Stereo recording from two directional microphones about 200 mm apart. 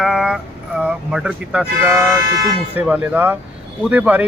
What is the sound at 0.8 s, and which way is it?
Speech, 5° right (ahead or behind).